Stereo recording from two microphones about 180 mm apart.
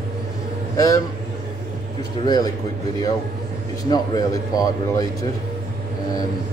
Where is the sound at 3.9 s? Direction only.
20° left (ahead or behind).